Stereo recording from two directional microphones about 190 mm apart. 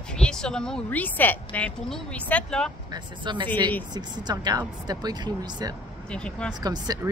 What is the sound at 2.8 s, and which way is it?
Speech, 25° right (ahead or behind).